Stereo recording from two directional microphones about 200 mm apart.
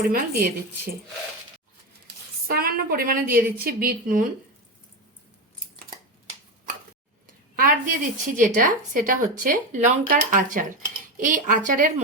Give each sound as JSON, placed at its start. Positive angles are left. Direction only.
{"t": 0.1, "sound": "a woman's voice", "side_deg": -50}
{"t": 2.5, "sound": "a woman's voice", "side_deg": -50}
{"t": 7.5, "sound": "a woman's voice", "side_deg": -45}